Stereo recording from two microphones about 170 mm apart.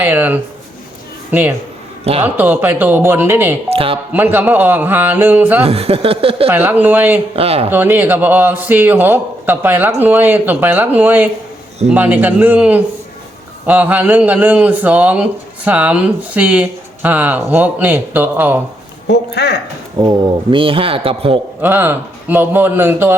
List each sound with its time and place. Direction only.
0.0 s speech: 10° right (ahead or behind)
3.7 s speech: 35° right (ahead or behind)
4.1 s speech: 10° right (ahead or behind)
5.6 s a man's voice: 35° right (ahead or behind)
6.5 s speech: 10° right (ahead or behind)
7.3 s a man's voice: 35° right (ahead or behind)
7.7 s speech: 10° right (ahead or behind)
19.0 s speech: 80° left
20.0 s a man's voice: 25° right (ahead or behind)
21.6 s speech: 10° right (ahead or behind)